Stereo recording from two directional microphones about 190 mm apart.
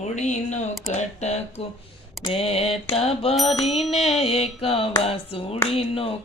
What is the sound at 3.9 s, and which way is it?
Mantra, 35° left (ahead or behind).